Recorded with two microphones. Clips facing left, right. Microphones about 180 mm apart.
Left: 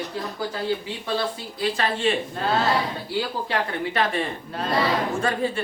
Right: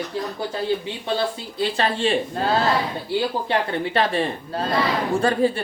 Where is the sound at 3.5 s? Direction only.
30° right (ahead or behind).